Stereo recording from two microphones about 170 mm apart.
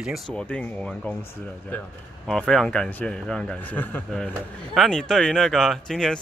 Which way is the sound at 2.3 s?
Centre (ahead or behind).